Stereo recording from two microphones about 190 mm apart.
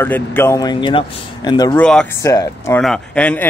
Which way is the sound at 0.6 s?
25° left (ahead or behind).